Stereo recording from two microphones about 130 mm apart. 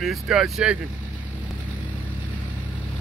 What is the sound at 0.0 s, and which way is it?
Speech, 5° right (ahead or behind).